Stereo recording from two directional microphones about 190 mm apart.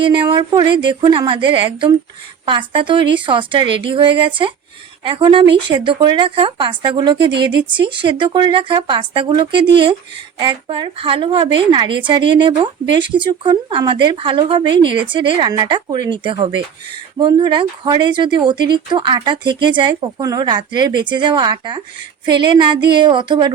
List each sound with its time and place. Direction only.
0.0 s speech: 25° right (ahead or behind)
7.3 s speech: 65° right (ahead or behind)
7.8 s speech: 25° right (ahead or behind)